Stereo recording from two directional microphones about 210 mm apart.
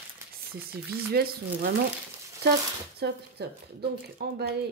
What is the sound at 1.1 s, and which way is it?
Speech, 50° right (ahead or behind).